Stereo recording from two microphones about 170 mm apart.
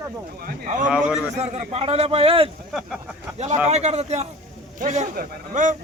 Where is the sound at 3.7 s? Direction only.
40° right (ahead or behind).